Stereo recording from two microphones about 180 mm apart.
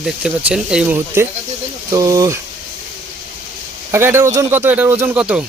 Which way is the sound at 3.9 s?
15° right (ahead or behind).